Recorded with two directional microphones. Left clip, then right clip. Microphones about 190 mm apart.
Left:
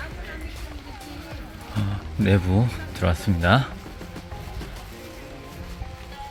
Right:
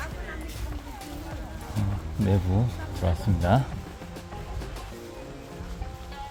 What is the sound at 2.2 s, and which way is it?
Speech, 15° left (ahead or behind).